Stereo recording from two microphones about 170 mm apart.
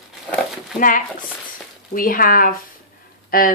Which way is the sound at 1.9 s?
55° left (ahead or behind).